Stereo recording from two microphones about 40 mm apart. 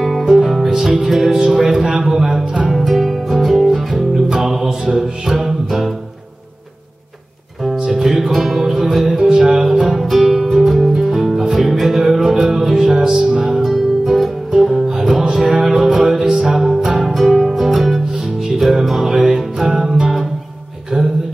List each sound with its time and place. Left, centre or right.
0.3 s music: centre
2.7 s music: centre
7.9 s music: centre
20.9 s music: right